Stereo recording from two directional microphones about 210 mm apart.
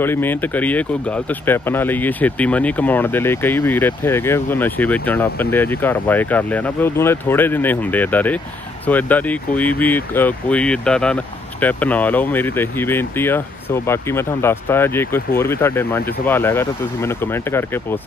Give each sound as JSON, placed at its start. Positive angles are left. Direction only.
{"t": 0.0, "sound": "speech", "side_deg": 10}